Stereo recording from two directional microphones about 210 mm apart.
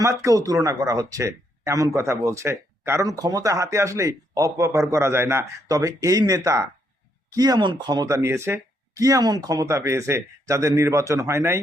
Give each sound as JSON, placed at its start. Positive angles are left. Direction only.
{"t": 0.0, "sound": "speech", "side_deg": -15}